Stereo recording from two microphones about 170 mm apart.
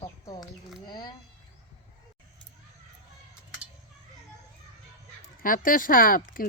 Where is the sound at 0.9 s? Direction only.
25° left (ahead or behind).